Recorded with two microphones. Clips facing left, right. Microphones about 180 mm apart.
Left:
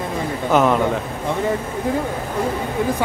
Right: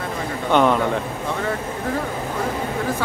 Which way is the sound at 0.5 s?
5° left (ahead or behind).